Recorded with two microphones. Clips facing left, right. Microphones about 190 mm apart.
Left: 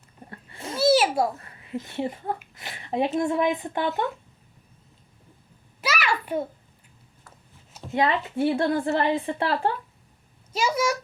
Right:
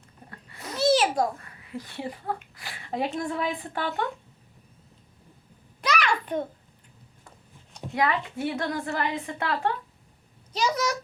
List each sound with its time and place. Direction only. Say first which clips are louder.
0.3 s a sound: left 3 dB; 30° left (ahead or behind)
0.8 s babbling: left 2 dB; 10° left (ahead or behind)
1.4 s a woman's voice: left 4 dB; 25° left (ahead or behind)
5.8 s a sound: right 1 dB; 5° left (ahead or behind)
7.9 s a woman's voice: left 3 dB; 30° left (ahead or behind)
10.5 s a child's voice: left 2 dB; 10° left (ahead or behind)